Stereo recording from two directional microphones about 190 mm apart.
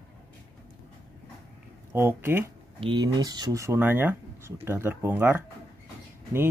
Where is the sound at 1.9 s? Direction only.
15° right (ahead or behind).